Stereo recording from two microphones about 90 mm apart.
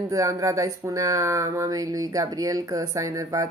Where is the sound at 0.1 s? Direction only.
35° right (ahead or behind).